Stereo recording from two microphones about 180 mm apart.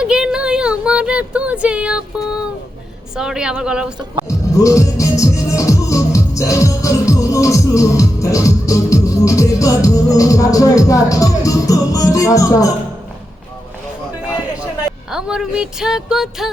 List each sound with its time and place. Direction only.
0.0 s a sound: 5° right (ahead or behind)
3.2 s speech: 5° right (ahead or behind)
4.3 s music: 15° left (ahead or behind)
15.1 s speech: 5° right (ahead or behind)